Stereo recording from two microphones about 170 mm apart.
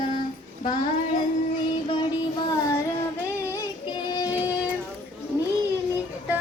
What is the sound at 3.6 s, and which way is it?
Child singing, 25° left (ahead or behind).